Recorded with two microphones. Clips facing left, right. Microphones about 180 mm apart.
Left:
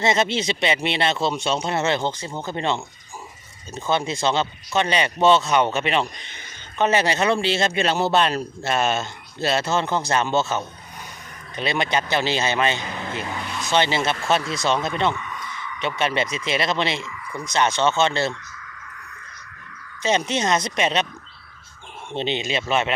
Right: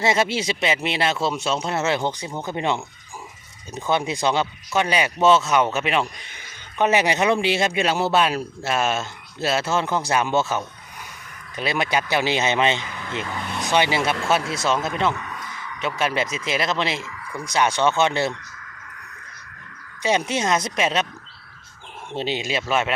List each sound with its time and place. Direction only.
0.0 s speech: 10° right (ahead or behind)
12.8 s speech: 25° left (ahead or behind)
13.7 s speech: 10° right (ahead or behind)
15.1 s speech: 40° right (ahead or behind)
16.0 s speech: 5° right (ahead or behind)
20.0 s speech: 10° right (ahead or behind)
22.1 s speech: 5° right (ahead or behind)